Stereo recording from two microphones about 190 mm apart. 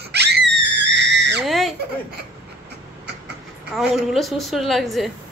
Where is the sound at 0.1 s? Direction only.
60° right (ahead or behind).